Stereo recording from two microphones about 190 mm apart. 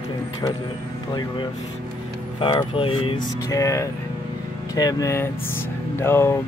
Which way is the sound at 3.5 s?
15° left (ahead or behind).